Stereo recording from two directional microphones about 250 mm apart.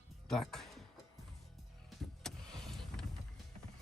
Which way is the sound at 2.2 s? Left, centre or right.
Centre.